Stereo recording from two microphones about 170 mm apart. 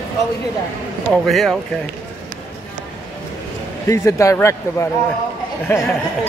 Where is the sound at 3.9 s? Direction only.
15° left (ahead or behind).